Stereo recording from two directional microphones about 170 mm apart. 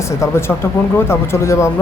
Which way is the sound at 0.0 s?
15° left (ahead or behind).